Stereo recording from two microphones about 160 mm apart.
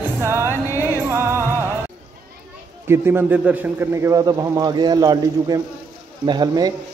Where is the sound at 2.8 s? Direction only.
15° right (ahead or behind).